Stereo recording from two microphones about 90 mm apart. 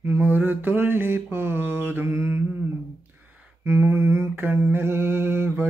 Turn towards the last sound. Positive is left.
turn(degrees=-25)  # may be behind; listen again after turning